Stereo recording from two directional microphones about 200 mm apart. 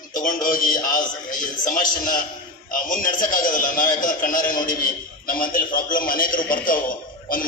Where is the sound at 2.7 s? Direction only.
45° left (ahead or behind).